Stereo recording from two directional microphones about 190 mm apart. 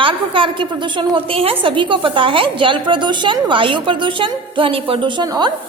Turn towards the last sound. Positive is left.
turn(degrees=-20)  # may be behind; listen again after turning